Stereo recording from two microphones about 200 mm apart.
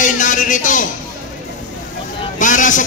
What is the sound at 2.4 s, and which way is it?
Speech, 40° left (ahead or behind).